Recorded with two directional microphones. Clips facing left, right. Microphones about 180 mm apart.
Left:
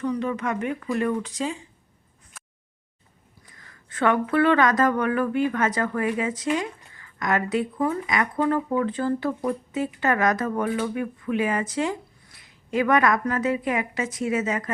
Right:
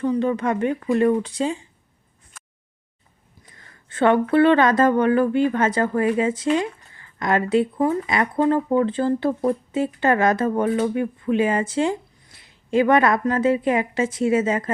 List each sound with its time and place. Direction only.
0.0 s speech: 30° right (ahead or behind)
3.4 s speech: 25° right (ahead or behind)